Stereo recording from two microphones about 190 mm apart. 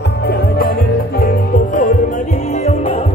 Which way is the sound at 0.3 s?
55° left (ahead or behind).